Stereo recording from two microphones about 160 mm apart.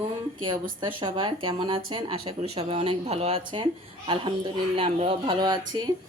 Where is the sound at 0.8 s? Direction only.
30° right (ahead or behind).